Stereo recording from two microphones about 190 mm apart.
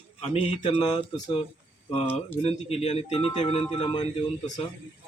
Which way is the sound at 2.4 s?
30° left (ahead or behind).